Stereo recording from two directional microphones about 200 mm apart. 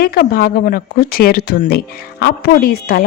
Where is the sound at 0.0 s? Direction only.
50° left (ahead or behind).